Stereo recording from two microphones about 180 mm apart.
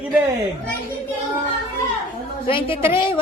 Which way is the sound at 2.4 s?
30° left (ahead or behind).